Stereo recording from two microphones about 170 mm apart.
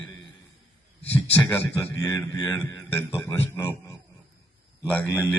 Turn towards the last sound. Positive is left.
turn(degrees=10)  # may be behind; listen again after turning